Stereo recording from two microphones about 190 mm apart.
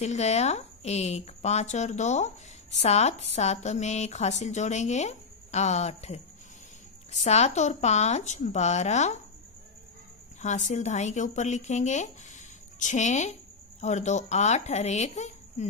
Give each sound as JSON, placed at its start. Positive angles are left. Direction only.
{"t": 0.0, "sound": "a woman's voice", "side_deg": 35}
{"t": 10.4, "sound": "speech", "side_deg": 40}